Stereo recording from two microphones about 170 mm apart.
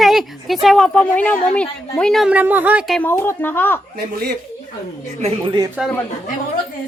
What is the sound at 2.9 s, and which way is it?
Speech, 10° left (ahead or behind).